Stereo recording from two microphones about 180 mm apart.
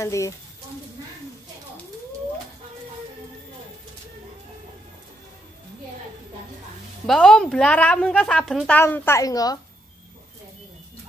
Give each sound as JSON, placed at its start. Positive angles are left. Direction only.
{"t": 0.0, "sound": "a woman's voice", "side_deg": 15}
{"t": 7.1, "sound": "a woman's voice", "side_deg": 5}